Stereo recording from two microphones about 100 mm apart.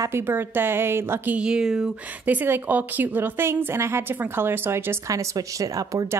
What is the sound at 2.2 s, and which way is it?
Speech, 20° right (ahead or behind).